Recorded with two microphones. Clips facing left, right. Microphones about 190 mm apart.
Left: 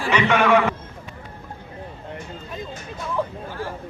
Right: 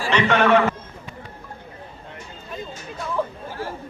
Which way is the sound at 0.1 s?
10° left (ahead or behind).